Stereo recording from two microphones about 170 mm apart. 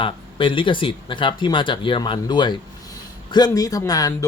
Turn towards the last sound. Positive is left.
turn(degrees=20)  # may be behind; listen again after turning